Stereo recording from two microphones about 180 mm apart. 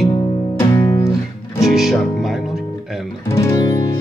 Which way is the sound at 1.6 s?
Centre (ahead or behind).